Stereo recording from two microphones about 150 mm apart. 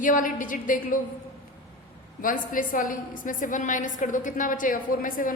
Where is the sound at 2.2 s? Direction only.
65° left (ahead or behind).